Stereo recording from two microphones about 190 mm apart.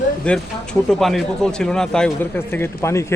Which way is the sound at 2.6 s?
15° left (ahead or behind).